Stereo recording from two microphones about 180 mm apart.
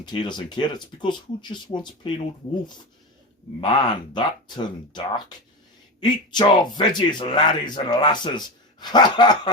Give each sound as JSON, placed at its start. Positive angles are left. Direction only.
{"t": 0.0, "sound": "speech", "side_deg": 25}
{"t": 3.6, "sound": "speech", "side_deg": 25}